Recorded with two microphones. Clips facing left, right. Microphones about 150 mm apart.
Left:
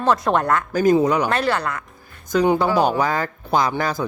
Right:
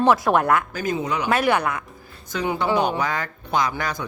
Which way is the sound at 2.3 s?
35° left (ahead or behind).